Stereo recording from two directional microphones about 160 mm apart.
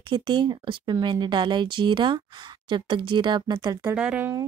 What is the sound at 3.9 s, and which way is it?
Speech, 10° right (ahead or behind).